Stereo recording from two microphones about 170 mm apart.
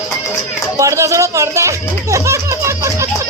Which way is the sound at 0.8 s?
20° right (ahead or behind).